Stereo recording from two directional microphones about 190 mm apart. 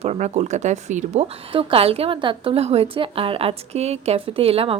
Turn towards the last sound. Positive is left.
turn(degrees=-30)  # may be behind; listen again after turning